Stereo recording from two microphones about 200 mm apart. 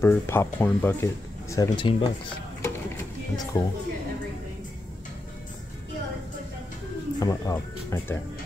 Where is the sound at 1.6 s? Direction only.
25° left (ahead or behind).